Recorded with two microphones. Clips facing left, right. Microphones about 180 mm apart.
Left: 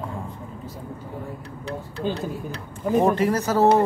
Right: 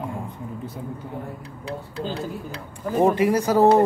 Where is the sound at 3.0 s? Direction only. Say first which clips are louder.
Right 3 dB; 15° right (ahead or behind).